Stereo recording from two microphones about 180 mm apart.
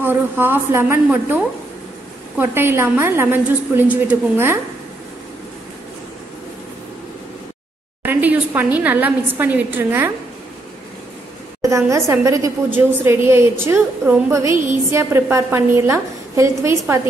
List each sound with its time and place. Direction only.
0.0 s a woman's voice: 10° right (ahead or behind)
8.0 s a woman's voice: 10° right (ahead or behind)
11.6 s a woman's voice: 15° right (ahead or behind)